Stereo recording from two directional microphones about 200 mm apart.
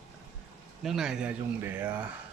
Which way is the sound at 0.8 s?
Centre (ahead or behind).